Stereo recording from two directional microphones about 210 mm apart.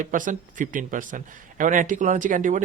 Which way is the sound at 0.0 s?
40° right (ahead or behind).